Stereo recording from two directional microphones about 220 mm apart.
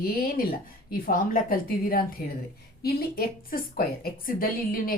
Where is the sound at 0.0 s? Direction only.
40° left (ahead or behind).